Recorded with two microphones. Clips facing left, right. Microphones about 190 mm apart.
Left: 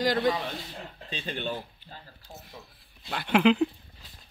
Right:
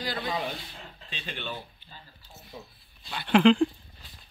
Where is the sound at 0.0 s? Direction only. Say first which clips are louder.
Left 9 dB; 75° left (ahead or behind).